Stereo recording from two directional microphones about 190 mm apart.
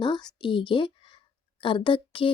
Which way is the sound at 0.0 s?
25° left (ahead or behind).